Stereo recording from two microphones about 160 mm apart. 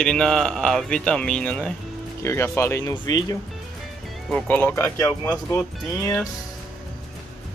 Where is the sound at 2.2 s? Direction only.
15° left (ahead or behind).